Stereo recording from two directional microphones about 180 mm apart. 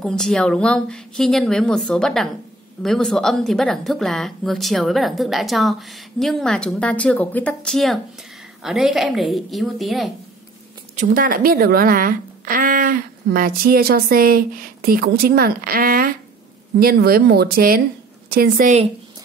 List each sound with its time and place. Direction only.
0.0 s a woman's voice: 5° left (ahead or behind)
11.0 s a woman's voice: 50° right (ahead or behind)